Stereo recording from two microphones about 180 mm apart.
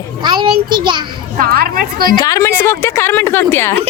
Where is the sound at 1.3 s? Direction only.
55° right (ahead or behind).